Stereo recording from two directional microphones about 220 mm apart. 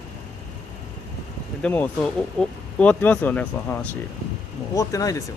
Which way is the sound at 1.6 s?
10° left (ahead or behind).